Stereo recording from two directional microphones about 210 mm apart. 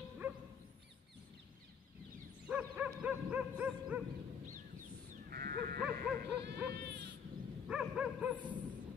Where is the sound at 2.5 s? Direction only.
5° right (ahead or behind).